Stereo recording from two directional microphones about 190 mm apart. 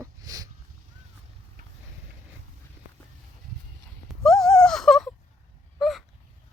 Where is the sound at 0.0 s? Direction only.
20° right (ahead or behind).